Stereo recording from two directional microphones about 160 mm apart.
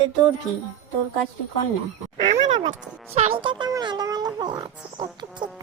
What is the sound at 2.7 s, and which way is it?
A child's voice, 40° right (ahead or behind).